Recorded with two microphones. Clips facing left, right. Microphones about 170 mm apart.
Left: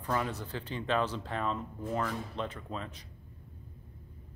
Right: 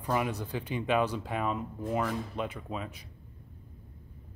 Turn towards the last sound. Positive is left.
turn(degrees=-10)  # may be behind; listen again after turning